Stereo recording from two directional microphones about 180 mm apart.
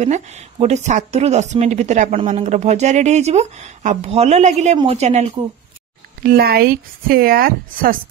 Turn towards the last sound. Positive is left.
turn(degrees=-55)  # may be behind; listen again after turning